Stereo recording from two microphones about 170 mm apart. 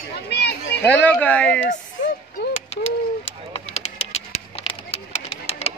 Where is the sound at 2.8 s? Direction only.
35° left (ahead or behind).